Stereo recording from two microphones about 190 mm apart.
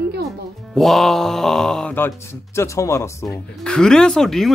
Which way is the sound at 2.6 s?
15° left (ahead or behind).